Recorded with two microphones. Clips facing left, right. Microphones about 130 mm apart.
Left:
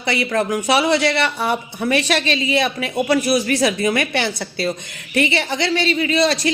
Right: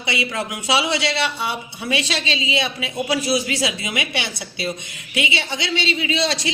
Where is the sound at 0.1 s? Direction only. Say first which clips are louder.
Left 6 dB; 45° left (ahead or behind).